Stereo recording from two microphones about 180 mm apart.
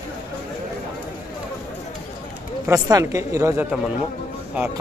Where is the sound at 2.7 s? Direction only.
20° right (ahead or behind).